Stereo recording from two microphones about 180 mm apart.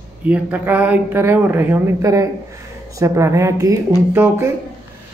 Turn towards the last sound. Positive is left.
turn(degrees=-15)  # may be behind; listen again after turning